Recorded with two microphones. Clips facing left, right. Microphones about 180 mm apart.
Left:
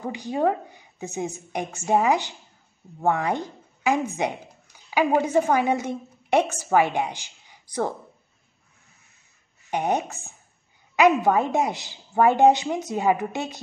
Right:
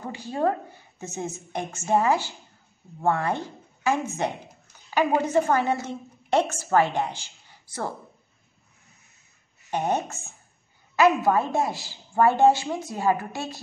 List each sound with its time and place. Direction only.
0.0 s a woman's voice: 15° left (ahead or behind)
9.7 s a woman's voice: 15° left (ahead or behind)